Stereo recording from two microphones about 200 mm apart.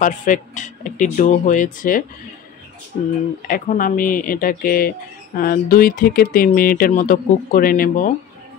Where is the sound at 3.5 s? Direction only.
40° left (ahead or behind).